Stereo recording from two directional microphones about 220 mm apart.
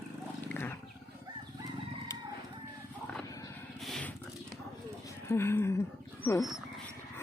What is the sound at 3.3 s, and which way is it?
Vehicle, 15° left (ahead or behind).